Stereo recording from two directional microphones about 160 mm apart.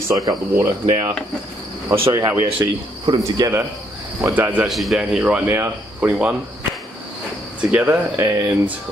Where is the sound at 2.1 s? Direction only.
15° right (ahead or behind).